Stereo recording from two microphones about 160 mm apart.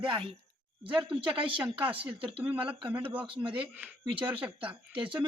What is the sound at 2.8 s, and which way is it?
Speech, 10° right (ahead or behind).